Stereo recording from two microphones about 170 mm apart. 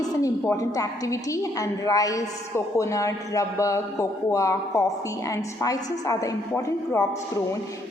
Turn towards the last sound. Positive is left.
turn(degrees=20)  # may be behind; listen again after turning